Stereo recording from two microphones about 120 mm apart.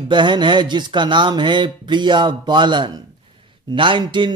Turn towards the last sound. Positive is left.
turn(degrees=-40)  # may be behind; listen again after turning